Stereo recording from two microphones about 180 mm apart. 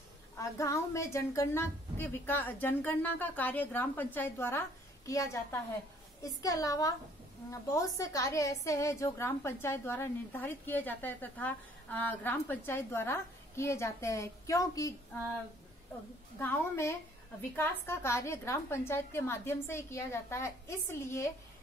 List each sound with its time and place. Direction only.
0.4 s a woman's voice: 15° left (ahead or behind)
16.3 s a woman's voice: 15° left (ahead or behind)